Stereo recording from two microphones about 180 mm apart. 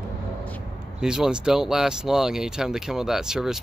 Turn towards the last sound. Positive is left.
turn(degrees=-5)  # may be behind; listen again after turning